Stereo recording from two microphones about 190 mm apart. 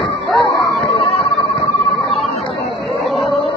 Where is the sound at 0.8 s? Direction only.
Centre (ahead or behind).